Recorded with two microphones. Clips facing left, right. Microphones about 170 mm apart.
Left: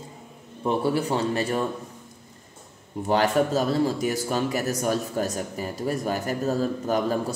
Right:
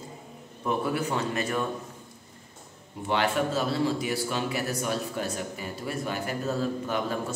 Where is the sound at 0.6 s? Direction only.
30° left (ahead or behind).